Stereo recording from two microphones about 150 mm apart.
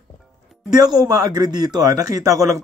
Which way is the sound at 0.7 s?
25° right (ahead or behind).